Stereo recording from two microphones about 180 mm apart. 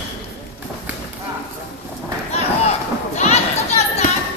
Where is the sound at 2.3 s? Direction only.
35° left (ahead or behind).